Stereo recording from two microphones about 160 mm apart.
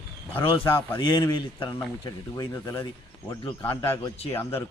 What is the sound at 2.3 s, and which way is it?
Speech, 15° left (ahead or behind).